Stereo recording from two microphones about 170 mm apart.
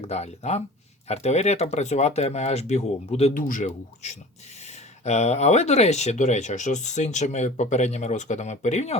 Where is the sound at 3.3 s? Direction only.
50° left (ahead or behind).